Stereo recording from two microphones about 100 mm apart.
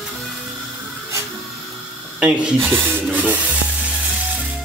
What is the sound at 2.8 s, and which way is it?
Speech, 20° right (ahead or behind).